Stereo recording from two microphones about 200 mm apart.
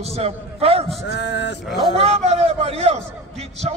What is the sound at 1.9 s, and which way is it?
A man's voice, 30° right (ahead or behind).